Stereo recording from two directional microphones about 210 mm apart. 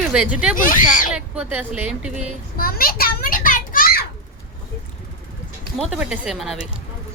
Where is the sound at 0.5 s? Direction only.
40° left (ahead or behind).